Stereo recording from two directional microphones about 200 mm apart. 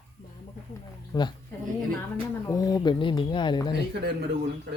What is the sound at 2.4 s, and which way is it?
Speech, 15° left (ahead or behind).